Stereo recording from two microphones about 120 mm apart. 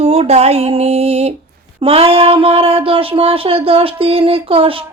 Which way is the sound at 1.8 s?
50° right (ahead or behind).